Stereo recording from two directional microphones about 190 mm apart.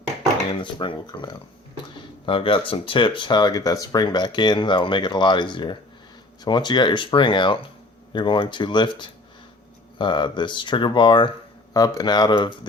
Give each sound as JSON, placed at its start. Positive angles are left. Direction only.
{"t": 0.6, "sound": "speech", "side_deg": 25}